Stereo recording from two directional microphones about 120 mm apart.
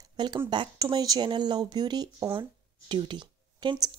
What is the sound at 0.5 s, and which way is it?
Speech, 35° right (ahead or behind).